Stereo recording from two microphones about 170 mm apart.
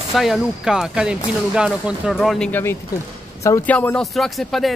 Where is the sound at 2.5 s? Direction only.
10° left (ahead or behind).